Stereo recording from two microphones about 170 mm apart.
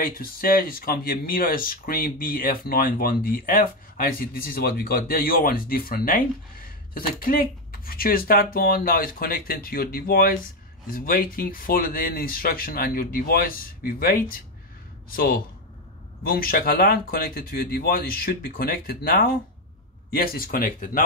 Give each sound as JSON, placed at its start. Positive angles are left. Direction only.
{"t": 0.0, "sound": "speech", "side_deg": 60}